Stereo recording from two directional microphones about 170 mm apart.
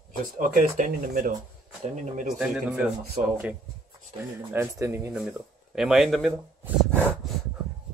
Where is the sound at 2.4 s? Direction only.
5° right (ahead or behind).